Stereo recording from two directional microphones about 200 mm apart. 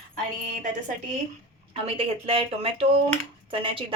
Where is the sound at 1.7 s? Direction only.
30° right (ahead or behind).